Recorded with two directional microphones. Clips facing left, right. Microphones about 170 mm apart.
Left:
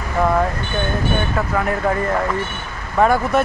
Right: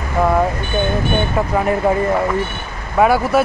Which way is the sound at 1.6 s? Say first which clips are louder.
Right 4 dB; 20° right (ahead or behind).